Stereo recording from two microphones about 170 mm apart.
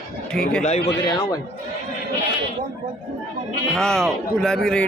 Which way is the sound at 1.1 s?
25° left (ahead or behind).